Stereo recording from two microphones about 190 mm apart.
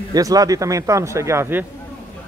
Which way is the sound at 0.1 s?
20° right (ahead or behind).